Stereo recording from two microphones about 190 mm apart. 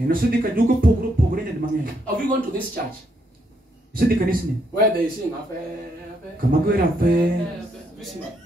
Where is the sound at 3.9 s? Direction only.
50° right (ahead or behind).